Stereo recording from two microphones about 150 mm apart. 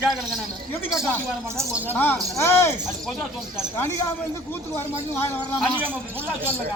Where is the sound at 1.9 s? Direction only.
15° left (ahead or behind).